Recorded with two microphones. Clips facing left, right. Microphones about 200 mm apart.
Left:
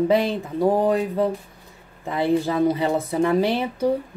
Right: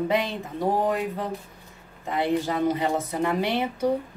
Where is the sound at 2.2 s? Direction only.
30° left (ahead or behind).